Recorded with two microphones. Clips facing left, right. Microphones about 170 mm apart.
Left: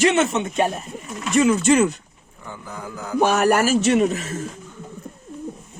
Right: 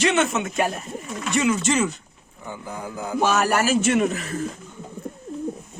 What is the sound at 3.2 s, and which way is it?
A man's voice, 50° left (ahead or behind).